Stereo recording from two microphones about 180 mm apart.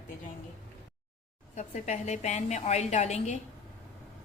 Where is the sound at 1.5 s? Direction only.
40° left (ahead or behind).